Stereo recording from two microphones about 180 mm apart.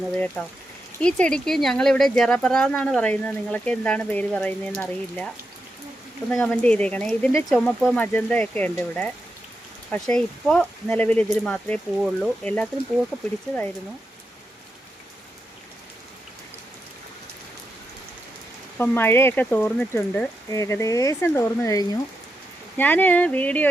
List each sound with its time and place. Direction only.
0.4 s speech: 5° left (ahead or behind)
6.3 s speech: 10° left (ahead or behind)
18.8 s speech: 10° left (ahead or behind)